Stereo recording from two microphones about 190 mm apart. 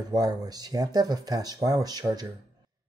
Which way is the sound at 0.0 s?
20° right (ahead or behind).